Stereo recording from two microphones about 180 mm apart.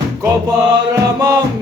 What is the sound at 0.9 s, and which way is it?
Music, 20° right (ahead or behind).